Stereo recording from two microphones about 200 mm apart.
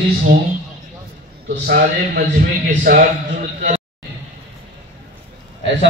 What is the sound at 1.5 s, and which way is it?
A man's voice, 50° right (ahead or behind).